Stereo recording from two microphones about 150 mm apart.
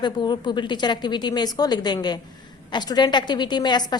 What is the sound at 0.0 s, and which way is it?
A woman's voice, 30° left (ahead or behind).